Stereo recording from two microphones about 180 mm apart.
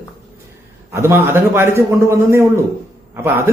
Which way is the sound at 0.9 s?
15° right (ahead or behind).